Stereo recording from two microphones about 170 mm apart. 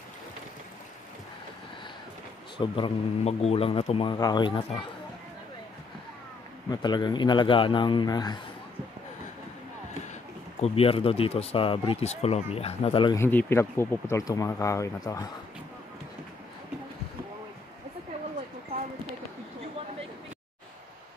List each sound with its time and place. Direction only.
2.5 s a man's voice: 30° left (ahead or behind)
6.7 s a man's voice: 25° left (ahead or behind)
10.6 s speech: 35° left (ahead or behind)
13.1 s speech: 15° left (ahead or behind)